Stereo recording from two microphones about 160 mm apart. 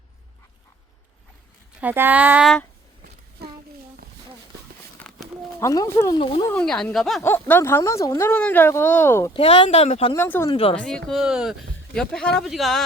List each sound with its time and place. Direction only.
1.8 s speech: 10° right (ahead or behind)
5.5 s speech: 20° left (ahead or behind)
6.5 s speech: 5° left (ahead or behind)
7.2 s speech: 15° left (ahead or behind)
9.3 s speech: 35° left (ahead or behind)
10.2 s speech: 15° left (ahead or behind)
10.5 s speech: 35° left (ahead or behind)
10.8 s speech: 5° left (ahead or behind)